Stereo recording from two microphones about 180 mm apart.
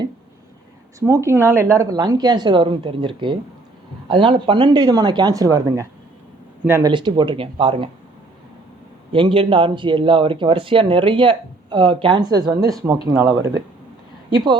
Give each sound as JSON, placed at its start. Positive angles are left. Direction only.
{"t": 0.9, "sound": "speech", "side_deg": -15}
{"t": 6.9, "sound": "speech", "side_deg": -25}
{"t": 9.1, "sound": "speech", "side_deg": -30}